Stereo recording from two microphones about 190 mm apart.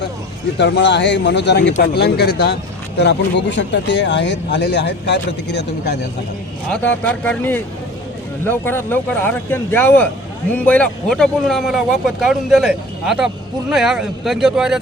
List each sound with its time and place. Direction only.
0.6 s speech: 65° left (ahead or behind)
6.7 s a man's voice: 5° left (ahead or behind)